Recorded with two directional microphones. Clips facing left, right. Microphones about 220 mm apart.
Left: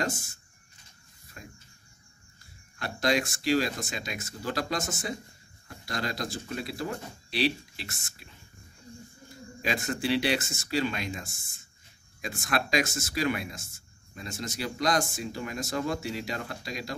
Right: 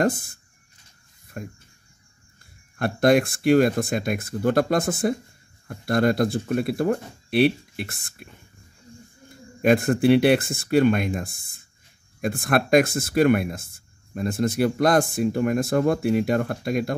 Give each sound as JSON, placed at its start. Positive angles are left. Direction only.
{"t": 0.0, "sound": "speech", "side_deg": -55}
{"t": 2.8, "sound": "speech", "side_deg": -55}
{"t": 9.6, "sound": "speech", "side_deg": -55}